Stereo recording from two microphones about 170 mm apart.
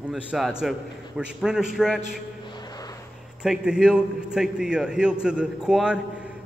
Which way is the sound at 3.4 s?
5° right (ahead or behind).